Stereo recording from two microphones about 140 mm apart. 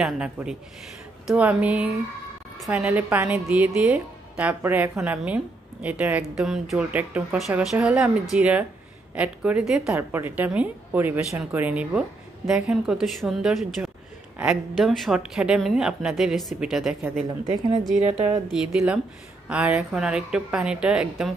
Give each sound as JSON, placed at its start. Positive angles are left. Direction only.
{"t": 0.0, "sound": "a woman's voice", "side_deg": -5}
{"t": 2.9, "sound": "a woman's voice", "side_deg": -10}
{"t": 17.9, "sound": "a woman's voice", "side_deg": -50}
{"t": 18.5, "sound": "a woman's voice", "side_deg": -5}